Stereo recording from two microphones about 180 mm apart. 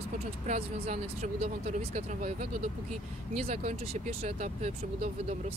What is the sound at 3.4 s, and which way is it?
Speech, 35° right (ahead or behind).